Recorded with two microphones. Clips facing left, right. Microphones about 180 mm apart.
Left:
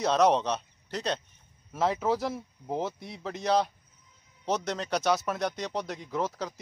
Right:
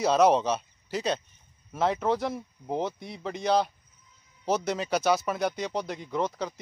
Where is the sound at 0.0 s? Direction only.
5° right (ahead or behind).